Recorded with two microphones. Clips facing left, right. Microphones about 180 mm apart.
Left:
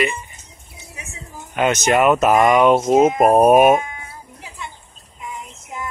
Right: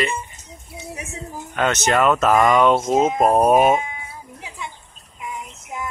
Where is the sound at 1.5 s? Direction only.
15° left (ahead or behind).